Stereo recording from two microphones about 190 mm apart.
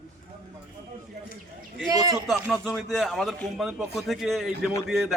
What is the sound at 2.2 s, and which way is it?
A man's voice, centre (ahead or behind).